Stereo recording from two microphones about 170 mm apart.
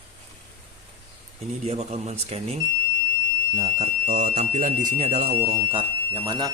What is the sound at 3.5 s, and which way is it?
Speech, 35° right (ahead or behind).